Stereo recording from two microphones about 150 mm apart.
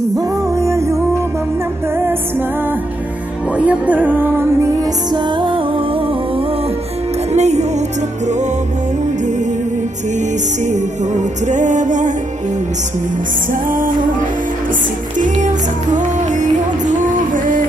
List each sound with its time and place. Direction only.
0.2 s music: 20° right (ahead or behind)
3.5 s music: 10° right (ahead or behind); by 6.4 s 40° right (ahead or behind)
7.3 s music: 50° right (ahead or behind)
10.1 s music: 55° right (ahead or behind)
13.5 s music: 65° right (ahead or behind)
15.1 s music: 55° right (ahead or behind)